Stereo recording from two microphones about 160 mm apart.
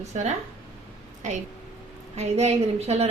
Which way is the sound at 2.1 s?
40° right (ahead or behind).